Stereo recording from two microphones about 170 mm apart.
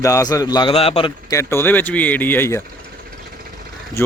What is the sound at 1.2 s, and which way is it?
Speech, 15° left (ahead or behind).